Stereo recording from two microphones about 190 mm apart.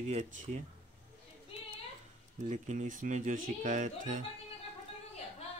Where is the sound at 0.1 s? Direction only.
35° right (ahead or behind).